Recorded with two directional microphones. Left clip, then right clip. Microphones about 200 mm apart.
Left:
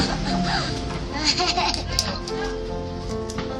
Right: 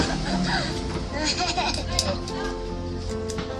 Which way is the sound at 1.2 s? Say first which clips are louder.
Left 4 dB; 40° left (ahead or behind).